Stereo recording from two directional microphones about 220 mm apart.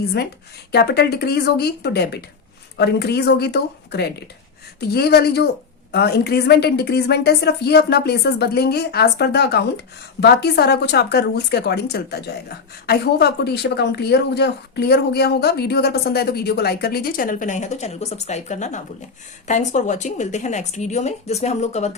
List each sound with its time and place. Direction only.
0.7 s a woman's voice: 50° left (ahead or behind); by 21.9 s 30° left (ahead or behind)